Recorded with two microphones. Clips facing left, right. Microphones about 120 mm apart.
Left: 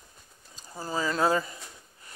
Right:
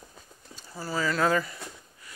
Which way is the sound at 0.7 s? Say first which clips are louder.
Right 1 dB; 20° left (ahead or behind).